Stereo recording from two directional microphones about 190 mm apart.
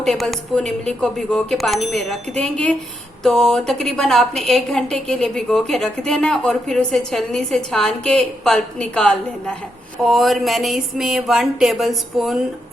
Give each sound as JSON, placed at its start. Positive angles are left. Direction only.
{"t": 0.0, "sound": "a woman's voice", "side_deg": 0}